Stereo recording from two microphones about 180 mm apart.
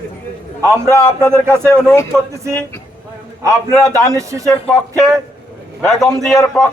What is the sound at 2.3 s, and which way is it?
Speech, 15° right (ahead or behind).